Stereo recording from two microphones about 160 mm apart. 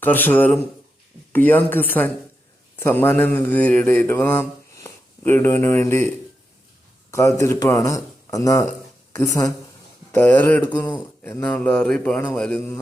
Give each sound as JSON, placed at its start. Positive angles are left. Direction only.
{"t": 0.0, "sound": "speech", "side_deg": 10}
{"t": 2.7, "sound": "a sound", "side_deg": 10}
{"t": 7.1, "sound": "speech", "side_deg": 20}